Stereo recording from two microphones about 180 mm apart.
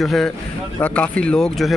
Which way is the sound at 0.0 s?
Centre (ahead or behind).